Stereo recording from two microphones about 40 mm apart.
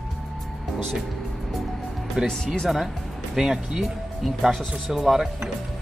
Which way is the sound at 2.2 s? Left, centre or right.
Centre.